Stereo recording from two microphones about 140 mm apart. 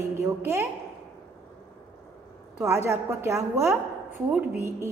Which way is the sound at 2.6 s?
20° right (ahead or behind).